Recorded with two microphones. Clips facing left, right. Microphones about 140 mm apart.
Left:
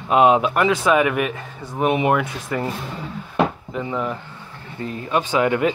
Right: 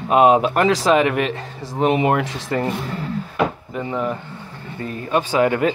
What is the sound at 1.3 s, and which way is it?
Speech, 90° right.